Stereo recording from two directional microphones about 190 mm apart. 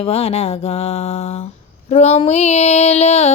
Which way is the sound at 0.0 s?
30° left (ahead or behind).